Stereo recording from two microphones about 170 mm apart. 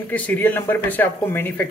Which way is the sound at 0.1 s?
10° left (ahead or behind).